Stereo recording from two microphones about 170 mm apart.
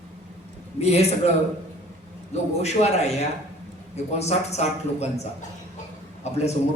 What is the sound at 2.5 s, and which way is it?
A man's voice, 40° left (ahead or behind).